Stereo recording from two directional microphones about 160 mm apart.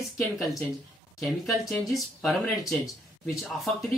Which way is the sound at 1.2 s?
Centre (ahead or behind).